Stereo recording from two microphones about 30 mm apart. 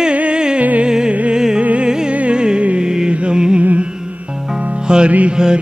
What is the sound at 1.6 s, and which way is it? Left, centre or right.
Music, right.